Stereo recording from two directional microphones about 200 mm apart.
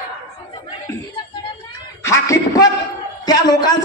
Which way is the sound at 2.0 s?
15° left (ahead or behind).